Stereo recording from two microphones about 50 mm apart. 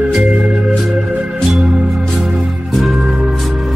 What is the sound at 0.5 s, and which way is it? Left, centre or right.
Music, centre.